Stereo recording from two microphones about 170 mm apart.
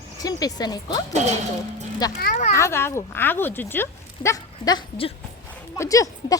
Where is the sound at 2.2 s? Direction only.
50° left (ahead or behind).